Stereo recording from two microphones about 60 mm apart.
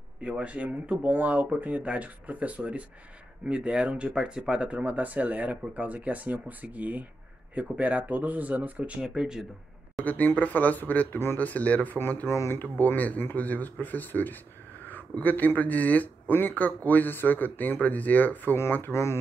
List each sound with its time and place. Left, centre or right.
0.2 s speech: right
9.0 s speech: centre
10.0 s speech: left
12.3 s speech: left
12.6 s speech: left
18.7 s speech: left